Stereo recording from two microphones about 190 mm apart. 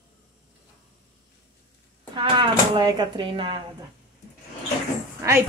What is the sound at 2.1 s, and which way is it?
Speech, 25° right (ahead or behind).